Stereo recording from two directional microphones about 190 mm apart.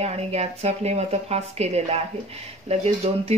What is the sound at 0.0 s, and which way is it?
Speech, 35° right (ahead or behind).